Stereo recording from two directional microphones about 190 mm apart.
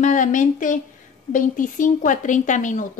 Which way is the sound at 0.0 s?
40° left (ahead or behind).